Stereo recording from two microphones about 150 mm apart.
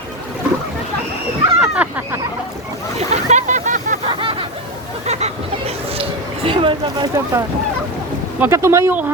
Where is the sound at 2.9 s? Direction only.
50° right (ahead or behind).